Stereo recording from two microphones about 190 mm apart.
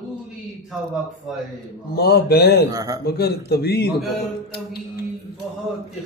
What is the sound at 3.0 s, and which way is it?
Speech, 55° left (ahead or behind).